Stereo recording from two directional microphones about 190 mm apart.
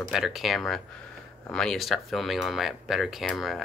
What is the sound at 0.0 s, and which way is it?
Speech, centre (ahead or behind).